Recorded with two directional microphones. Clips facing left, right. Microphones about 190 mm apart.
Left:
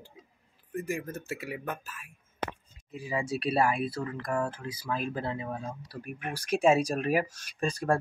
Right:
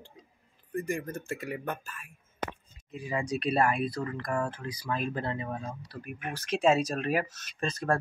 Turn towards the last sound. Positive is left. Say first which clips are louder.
# left 1 dB
turn(degrees=10)  # may be behind; listen again after turning